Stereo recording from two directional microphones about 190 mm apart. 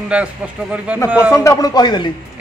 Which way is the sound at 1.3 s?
15° left (ahead or behind).